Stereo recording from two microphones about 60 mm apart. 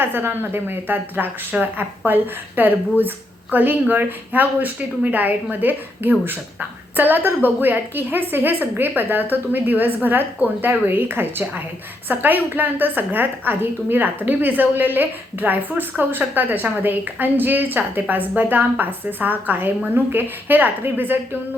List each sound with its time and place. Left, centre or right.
0.0 s a woman's voice: right